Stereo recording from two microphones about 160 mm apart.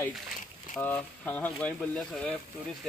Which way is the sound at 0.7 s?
10° left (ahead or behind).